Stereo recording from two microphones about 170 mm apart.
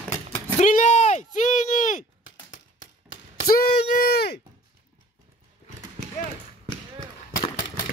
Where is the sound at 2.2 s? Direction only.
90° left; by 4.4 s 70° left (ahead or behind).